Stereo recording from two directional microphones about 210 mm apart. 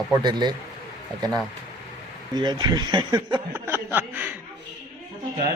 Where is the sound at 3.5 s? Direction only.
10° right (ahead or behind).